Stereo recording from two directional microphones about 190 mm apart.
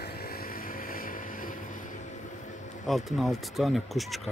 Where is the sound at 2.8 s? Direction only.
Centre (ahead or behind).